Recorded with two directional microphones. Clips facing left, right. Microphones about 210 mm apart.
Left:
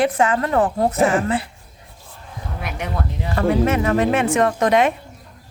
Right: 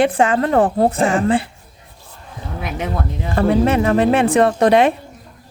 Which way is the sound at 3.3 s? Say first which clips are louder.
Right 3 dB; 30° right (ahead or behind).